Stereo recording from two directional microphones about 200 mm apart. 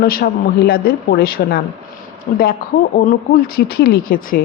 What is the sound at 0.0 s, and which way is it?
A woman's voice, 50° left (ahead or behind).